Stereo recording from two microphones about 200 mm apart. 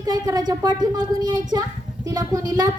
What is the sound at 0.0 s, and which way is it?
Speech, 20° right (ahead or behind).